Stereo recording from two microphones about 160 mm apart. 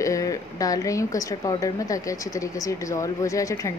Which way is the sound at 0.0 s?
20° left (ahead or behind).